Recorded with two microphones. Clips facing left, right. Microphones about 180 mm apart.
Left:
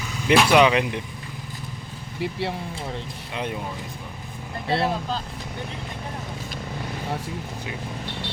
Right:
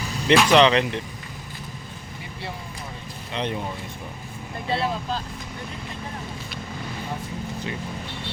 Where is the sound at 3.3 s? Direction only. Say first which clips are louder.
Right 2 dB; 5° left (ahead or behind).